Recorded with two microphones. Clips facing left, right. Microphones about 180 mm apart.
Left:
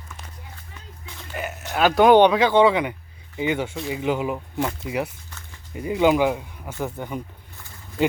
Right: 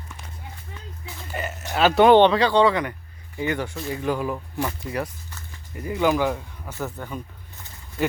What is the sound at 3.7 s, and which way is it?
Speech, centre (ahead or behind).